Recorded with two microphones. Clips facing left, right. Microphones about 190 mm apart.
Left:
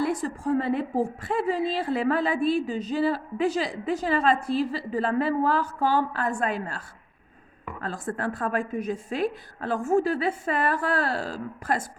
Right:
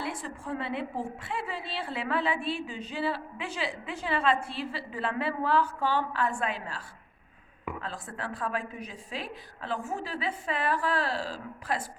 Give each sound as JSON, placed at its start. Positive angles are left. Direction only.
{"t": 0.0, "sound": "a woman's voice", "side_deg": 40}